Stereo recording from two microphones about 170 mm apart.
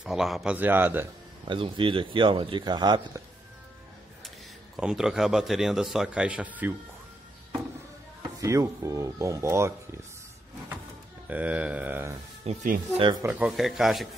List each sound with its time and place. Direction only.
0.0 s speech: centre (ahead or behind)
1.5 s speech: 30° right (ahead or behind)
4.7 s a man's voice: 5° right (ahead or behind)
8.2 s speech: 20° right (ahead or behind)
11.2 s speech: 10° right (ahead or behind)
12.4 s speech: 40° right (ahead or behind)
13.2 s a man's voice: 10° right (ahead or behind)